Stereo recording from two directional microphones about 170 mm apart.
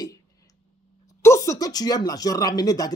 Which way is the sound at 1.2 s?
15° left (ahead or behind).